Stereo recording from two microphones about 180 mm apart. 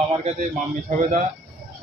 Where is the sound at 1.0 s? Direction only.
45° right (ahead or behind).